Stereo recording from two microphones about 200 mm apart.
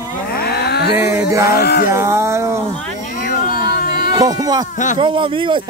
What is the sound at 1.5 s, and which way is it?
Speech, 50° left (ahead or behind).